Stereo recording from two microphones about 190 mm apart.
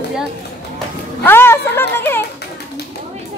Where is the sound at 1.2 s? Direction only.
10° left (ahead or behind).